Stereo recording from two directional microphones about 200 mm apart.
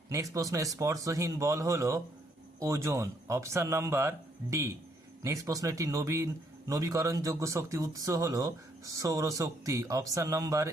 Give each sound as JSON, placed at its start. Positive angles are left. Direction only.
{"t": 0.1, "sound": "a man's voice", "side_deg": -15}